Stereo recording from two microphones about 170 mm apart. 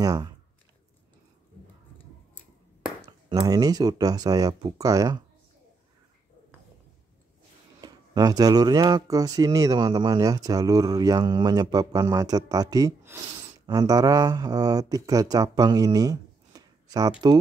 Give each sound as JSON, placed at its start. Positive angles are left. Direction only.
{"t": 0.0, "sound": "speech", "side_deg": -20}
{"t": 3.0, "sound": "speech", "side_deg": -25}
{"t": 7.8, "sound": "speech", "side_deg": -25}